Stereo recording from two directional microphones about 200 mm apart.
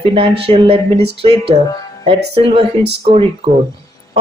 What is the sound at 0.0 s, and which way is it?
A woman's voice, 25° right (ahead or behind).